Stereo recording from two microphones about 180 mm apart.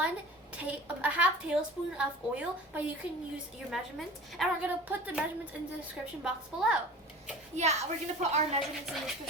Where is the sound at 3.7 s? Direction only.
Centre (ahead or behind).